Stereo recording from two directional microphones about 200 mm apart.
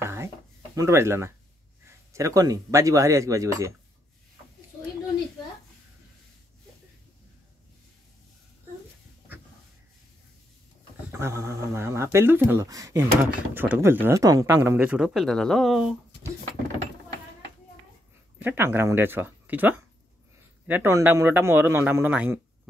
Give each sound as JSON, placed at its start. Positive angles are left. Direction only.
{"t": 0.0, "sound": "a sound", "side_deg": -15}
{"t": 0.7, "sound": "speech", "side_deg": -15}
{"t": 11.1, "sound": "speech", "side_deg": -15}
{"t": 18.4, "sound": "speech", "side_deg": -10}